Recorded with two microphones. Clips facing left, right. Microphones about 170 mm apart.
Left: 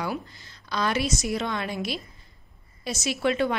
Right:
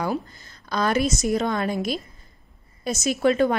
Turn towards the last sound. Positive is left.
turn(degrees=-45)  # may be behind; listen again after turning